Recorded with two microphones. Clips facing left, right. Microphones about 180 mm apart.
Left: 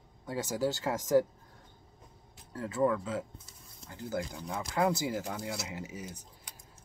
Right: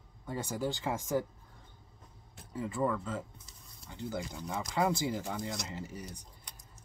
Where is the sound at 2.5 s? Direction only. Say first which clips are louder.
Left 3 dB; centre (ahead or behind).